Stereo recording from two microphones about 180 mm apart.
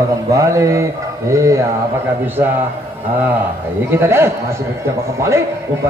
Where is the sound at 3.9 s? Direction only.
15° right (ahead or behind).